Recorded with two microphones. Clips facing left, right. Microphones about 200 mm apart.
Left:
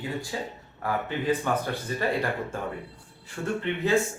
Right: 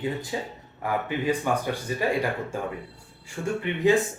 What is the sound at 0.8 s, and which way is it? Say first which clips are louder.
Speech: right 1 dB; 10° right (ahead or behind).